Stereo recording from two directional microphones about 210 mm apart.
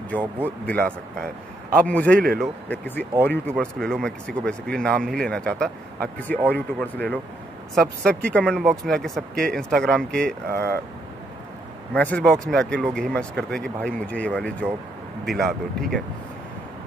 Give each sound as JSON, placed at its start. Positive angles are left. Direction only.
{"t": 0.1, "sound": "speech", "side_deg": 10}
{"t": 10.5, "sound": "speech", "side_deg": -50}
{"t": 11.9, "sound": "speech", "side_deg": 5}